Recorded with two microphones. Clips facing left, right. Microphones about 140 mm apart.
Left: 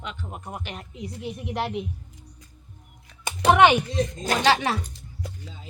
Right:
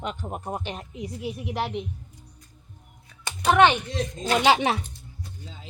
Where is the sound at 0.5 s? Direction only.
25° right (ahead or behind).